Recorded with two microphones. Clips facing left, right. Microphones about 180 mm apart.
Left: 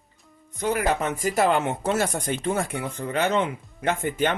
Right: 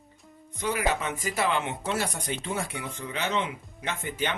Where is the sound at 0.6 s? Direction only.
50° left (ahead or behind).